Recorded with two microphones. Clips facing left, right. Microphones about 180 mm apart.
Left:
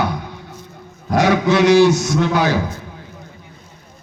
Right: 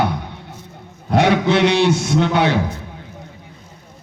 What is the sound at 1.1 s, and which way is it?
A man's voice, 25° right (ahead or behind).